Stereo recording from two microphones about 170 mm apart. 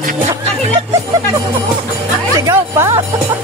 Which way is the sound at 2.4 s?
15° right (ahead or behind).